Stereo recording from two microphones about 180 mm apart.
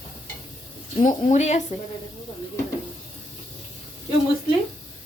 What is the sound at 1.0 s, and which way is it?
Speech, 45° left (ahead or behind).